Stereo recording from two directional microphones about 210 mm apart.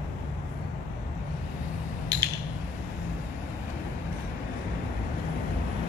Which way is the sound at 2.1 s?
20° right (ahead or behind).